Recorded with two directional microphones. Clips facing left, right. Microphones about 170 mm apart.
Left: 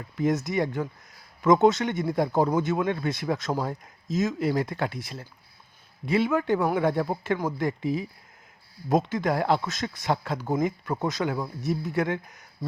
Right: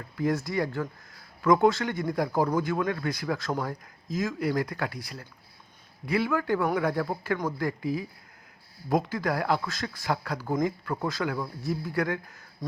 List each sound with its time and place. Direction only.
0.2 s speech: 20° left (ahead or behind)